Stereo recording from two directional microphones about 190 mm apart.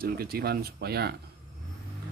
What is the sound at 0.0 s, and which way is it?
Speech, 55° right (ahead or behind).